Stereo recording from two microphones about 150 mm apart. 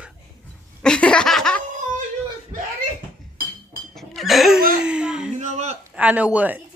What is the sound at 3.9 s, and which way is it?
Cough, centre (ahead or behind).